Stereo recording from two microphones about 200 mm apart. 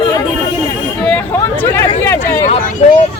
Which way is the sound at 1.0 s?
5° left (ahead or behind).